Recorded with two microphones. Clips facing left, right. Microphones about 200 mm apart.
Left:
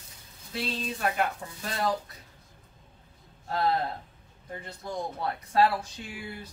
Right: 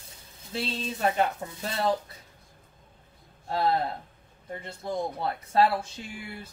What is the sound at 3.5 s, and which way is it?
Speech, 25° right (ahead or behind).